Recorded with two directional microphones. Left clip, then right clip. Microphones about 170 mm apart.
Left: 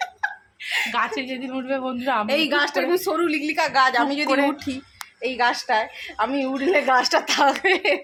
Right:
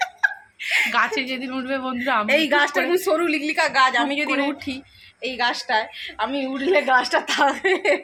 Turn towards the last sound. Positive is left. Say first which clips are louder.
# even
turn(degrees=10)  # may be behind; listen again after turning